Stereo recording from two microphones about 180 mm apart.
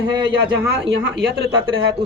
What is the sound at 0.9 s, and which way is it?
Speech, 75° right (ahead or behind).